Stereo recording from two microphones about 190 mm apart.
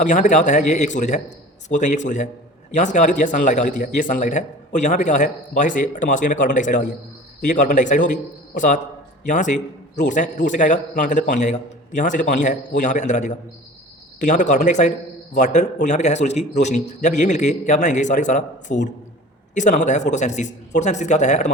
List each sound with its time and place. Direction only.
0.0 s a man's voice: 40° left (ahead or behind)